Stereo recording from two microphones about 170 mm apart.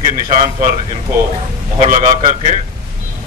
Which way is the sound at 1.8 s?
40° right (ahead or behind).